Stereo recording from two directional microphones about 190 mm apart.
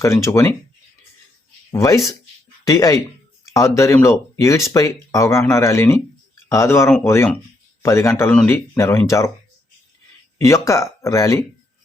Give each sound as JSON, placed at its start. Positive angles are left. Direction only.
{"t": 0.0, "sound": "speech", "side_deg": 15}
{"t": 1.7, "sound": "speech", "side_deg": 15}
{"t": 10.3, "sound": "speech", "side_deg": 15}